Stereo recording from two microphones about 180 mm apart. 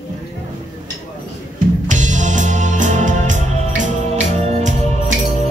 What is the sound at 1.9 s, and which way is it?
Music, 45° right (ahead or behind).